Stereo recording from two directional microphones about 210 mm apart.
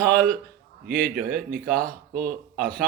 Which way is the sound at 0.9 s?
45° right (ahead or behind).